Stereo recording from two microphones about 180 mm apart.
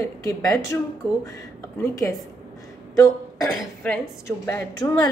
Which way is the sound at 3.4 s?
Centre (ahead or behind).